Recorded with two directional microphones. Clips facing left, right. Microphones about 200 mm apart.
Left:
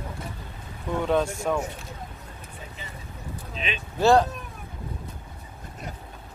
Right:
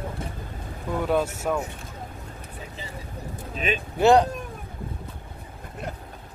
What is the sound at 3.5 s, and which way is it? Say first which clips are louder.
Vehicle: right 6 dB; 45° right (ahead or behind).